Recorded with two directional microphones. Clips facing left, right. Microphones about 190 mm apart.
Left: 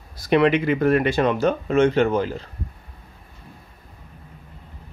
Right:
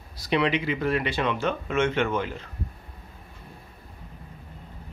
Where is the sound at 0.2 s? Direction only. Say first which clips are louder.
Left 7 dB; 50° left (ahead or behind); by 2.5 s 35° left (ahead or behind).